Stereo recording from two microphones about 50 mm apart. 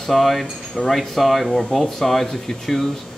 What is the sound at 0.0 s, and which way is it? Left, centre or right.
Speech, centre.